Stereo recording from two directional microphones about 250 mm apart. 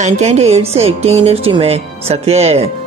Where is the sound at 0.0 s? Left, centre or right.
Right.